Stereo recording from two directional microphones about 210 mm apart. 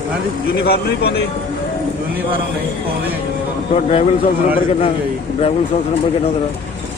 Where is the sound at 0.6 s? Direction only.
50° left (ahead or behind).